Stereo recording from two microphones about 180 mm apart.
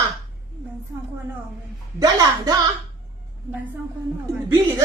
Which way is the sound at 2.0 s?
20° right (ahead or behind).